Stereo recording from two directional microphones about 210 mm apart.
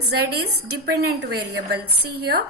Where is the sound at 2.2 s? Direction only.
50° right (ahead or behind).